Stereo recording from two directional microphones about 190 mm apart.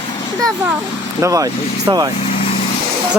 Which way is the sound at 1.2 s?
15° right (ahead or behind).